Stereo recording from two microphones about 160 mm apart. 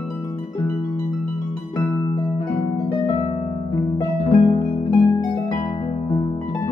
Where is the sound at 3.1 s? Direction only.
30° left (ahead or behind).